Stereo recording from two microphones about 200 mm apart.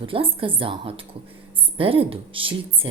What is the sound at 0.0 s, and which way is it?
Speech, 25° right (ahead or behind).